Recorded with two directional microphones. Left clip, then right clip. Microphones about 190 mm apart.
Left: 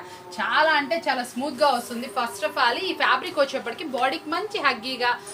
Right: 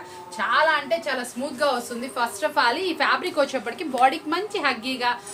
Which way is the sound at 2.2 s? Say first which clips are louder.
Right 1 dB; 25° right (ahead or behind).